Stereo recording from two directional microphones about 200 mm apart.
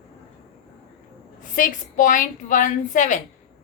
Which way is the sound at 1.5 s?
40° left (ahead or behind).